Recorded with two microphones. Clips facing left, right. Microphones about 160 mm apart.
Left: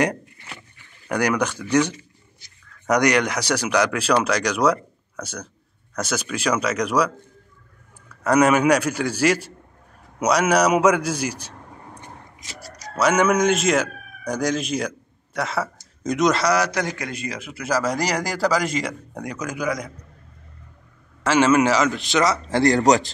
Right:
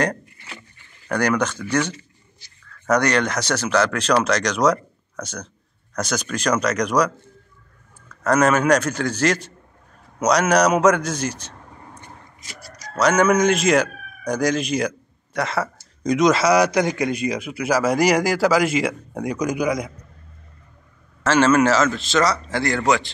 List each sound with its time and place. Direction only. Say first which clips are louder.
1.0 s speech: right 1 dB; 10° left (ahead or behind)
8.1 s speech: left 1 dB; 10° left (ahead or behind)
12.9 s speech: right 1 dB; 5° left (ahead or behind)
16.5 s a man's voice: right 5 dB; 15° right (ahead or behind)
21.2 s speech: right 1 dB; 15° left (ahead or behind)
22.5 s speech: left 4 dB; 35° left (ahead or behind)